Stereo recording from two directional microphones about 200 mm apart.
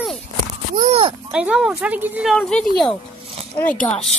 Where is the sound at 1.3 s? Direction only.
5° right (ahead or behind).